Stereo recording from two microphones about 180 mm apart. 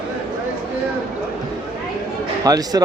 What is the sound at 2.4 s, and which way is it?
Speech, 20° right (ahead or behind).